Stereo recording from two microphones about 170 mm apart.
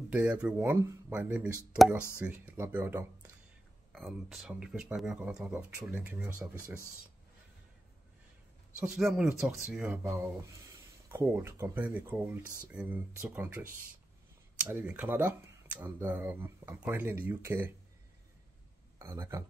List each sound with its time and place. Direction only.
0.1 s speech: 10° right (ahead or behind)
3.9 s speech: centre (ahead or behind)
8.8 s speech: 5° right (ahead or behind)
18.9 s speech: 15° right (ahead or behind)